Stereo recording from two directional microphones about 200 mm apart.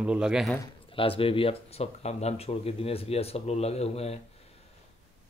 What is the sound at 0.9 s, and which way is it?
Speech, 25° left (ahead or behind).